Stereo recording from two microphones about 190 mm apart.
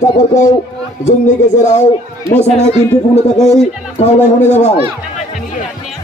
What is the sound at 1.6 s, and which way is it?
Speech, 40° left (ahead or behind).